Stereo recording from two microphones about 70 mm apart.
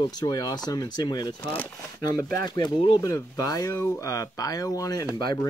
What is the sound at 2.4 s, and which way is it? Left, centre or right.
Speech, left.